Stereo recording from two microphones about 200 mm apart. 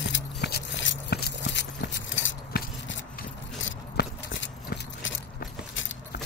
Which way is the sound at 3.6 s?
65° left (ahead or behind).